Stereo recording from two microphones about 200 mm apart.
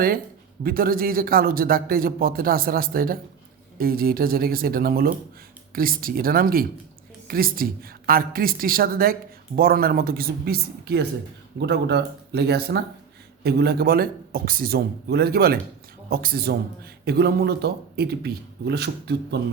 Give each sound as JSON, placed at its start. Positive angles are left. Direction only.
{"t": 0.6, "sound": "speech", "side_deg": -45}